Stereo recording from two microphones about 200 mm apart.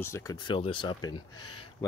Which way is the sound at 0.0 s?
15° left (ahead or behind).